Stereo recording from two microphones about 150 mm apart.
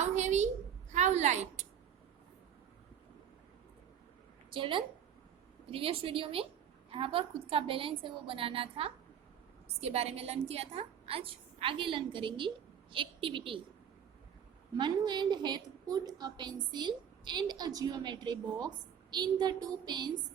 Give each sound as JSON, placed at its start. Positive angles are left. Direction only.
{"t": 0.0, "sound": "a sound", "side_deg": -50}
{"t": 0.9, "sound": "a woman's voice", "side_deg": -50}
{"t": 4.5, "sound": "a woman's voice", "side_deg": -35}
{"t": 14.8, "sound": "a woman's voice", "side_deg": -30}